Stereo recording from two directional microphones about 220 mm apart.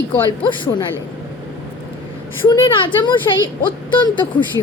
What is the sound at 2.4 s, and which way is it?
Speech, 20° left (ahead or behind).